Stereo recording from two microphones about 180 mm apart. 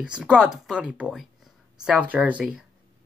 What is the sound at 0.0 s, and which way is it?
Speech, 5° right (ahead or behind).